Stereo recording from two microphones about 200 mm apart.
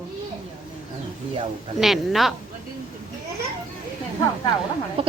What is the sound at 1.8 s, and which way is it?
Speech, centre (ahead or behind).